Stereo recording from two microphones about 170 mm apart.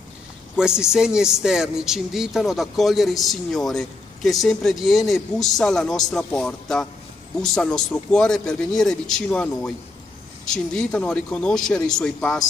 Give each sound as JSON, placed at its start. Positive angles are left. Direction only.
{"t": 0.6, "sound": "speech", "side_deg": -5}